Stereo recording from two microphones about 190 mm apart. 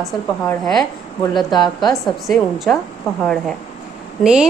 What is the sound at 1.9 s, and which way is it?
Speech, centre (ahead or behind).